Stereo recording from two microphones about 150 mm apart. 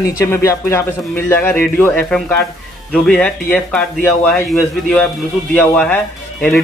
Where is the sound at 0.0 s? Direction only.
20° left (ahead or behind).